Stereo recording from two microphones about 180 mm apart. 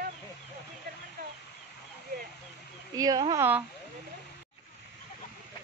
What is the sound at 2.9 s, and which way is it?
Speech, 20° right (ahead or behind).